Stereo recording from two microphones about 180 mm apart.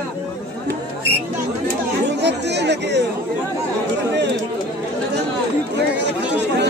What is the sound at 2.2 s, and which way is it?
Speech, 70° right (ahead or behind).